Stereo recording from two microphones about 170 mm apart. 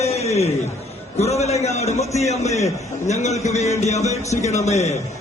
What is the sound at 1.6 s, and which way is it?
A man's voice, 40° left (ahead or behind).